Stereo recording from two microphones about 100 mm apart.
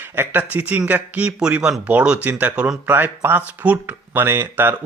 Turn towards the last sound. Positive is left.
turn(degrees=-20)  # may be behind; listen again after turning